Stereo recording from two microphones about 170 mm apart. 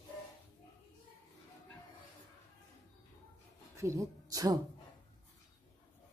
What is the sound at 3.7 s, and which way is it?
Speech, 20° right (ahead or behind).